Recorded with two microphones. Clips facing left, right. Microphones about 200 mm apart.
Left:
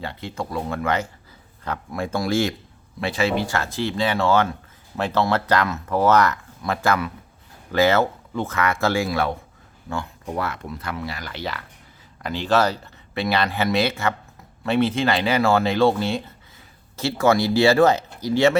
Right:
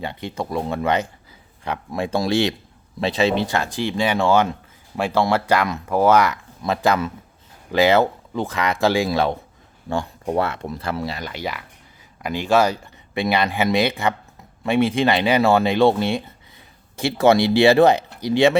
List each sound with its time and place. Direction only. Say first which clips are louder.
0.0 s speech: right 2 dB; 20° right (ahead or behind)
9.9 s speech: right 6 dB; 30° right (ahead or behind)